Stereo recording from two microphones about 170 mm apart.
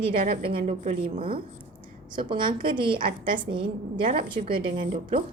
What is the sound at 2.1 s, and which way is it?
A woman's voice, 30° right (ahead or behind).